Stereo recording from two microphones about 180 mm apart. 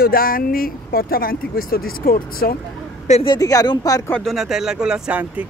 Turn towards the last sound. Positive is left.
turn(degrees=-5)  # may be behind; listen again after turning